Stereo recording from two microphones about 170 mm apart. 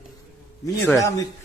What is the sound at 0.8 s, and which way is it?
Speech, 20° left (ahead or behind).